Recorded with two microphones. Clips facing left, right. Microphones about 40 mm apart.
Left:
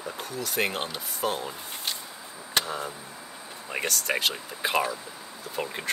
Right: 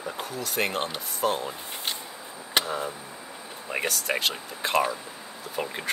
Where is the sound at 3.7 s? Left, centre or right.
Centre.